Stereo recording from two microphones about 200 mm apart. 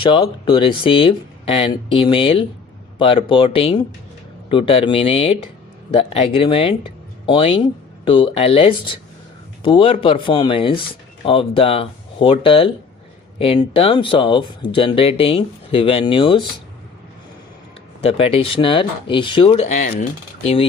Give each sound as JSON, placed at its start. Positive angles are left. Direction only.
{"t": 0.0, "sound": "speech", "side_deg": 25}
{"t": 18.0, "sound": "speech", "side_deg": 30}